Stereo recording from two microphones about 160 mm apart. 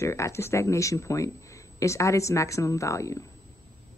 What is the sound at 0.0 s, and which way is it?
Speech, 15° left (ahead or behind).